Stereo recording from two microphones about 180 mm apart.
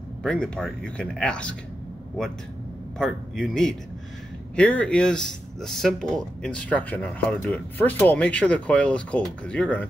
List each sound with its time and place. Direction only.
0.2 s speech: 5° left (ahead or behind)
3.0 s speech: centre (ahead or behind)